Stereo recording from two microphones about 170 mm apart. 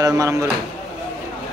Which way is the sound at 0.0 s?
20° right (ahead or behind).